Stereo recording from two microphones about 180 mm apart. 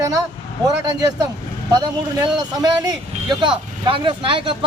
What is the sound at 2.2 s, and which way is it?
Speech, 20° right (ahead or behind).